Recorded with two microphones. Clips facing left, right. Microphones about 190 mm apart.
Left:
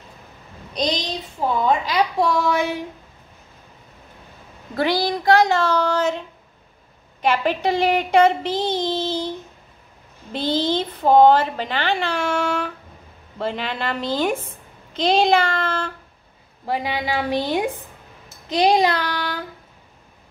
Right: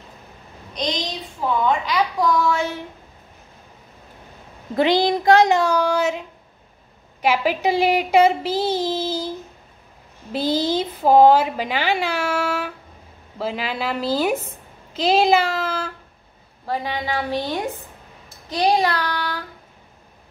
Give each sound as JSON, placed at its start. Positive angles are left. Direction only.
{"t": 1.4, "sound": "a woman's voice", "side_deg": 40}
{"t": 1.9, "sound": "child singing", "side_deg": 25}
{"t": 4.7, "sound": "a woman's voice", "side_deg": -20}
{"t": 10.3, "sound": "a woman's voice", "side_deg": -10}
{"t": 16.6, "sound": "child singing", "side_deg": 10}
{"t": 18.5, "sound": "child singing", "side_deg": 15}